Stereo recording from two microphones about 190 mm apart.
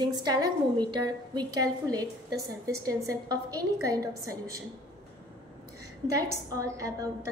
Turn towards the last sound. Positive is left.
turn(degrees=-15)  # may be behind; listen again after turning